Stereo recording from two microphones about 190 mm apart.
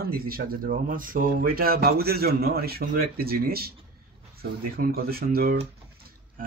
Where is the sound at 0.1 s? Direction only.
50° right (ahead or behind).